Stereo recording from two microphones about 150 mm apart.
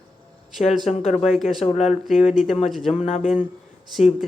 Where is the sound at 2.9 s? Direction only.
50° left (ahead or behind).